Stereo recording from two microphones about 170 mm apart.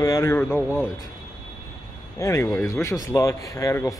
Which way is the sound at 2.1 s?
20° left (ahead or behind).